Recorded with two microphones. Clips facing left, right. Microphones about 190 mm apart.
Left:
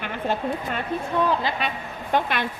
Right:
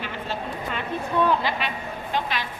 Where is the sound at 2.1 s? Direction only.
55° left (ahead or behind).